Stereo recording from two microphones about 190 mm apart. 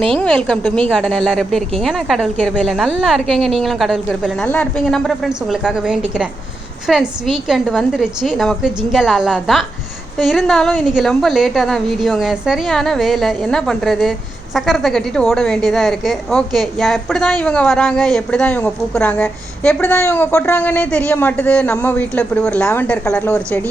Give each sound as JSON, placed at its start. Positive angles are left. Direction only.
{"t": 0.1, "sound": "a woman's voice", "side_deg": 5}